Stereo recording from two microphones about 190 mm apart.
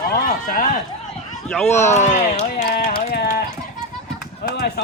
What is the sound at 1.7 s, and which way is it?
Speech, 35° left (ahead or behind).